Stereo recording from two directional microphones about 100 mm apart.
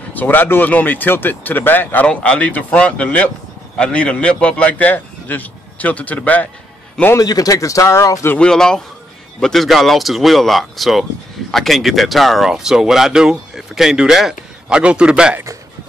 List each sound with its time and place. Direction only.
0.1 s a man's voice: 20° left (ahead or behind)
7.2 s speech: 35° left (ahead or behind)
8.4 s a man's voice: 5° left (ahead or behind); by 15.3 s 10° right (ahead or behind)